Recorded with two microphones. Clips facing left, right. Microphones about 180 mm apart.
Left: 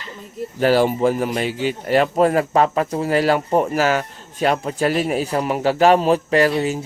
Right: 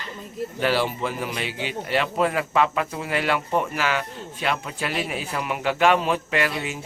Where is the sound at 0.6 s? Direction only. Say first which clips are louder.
Left 8 dB; 45° left (ahead or behind).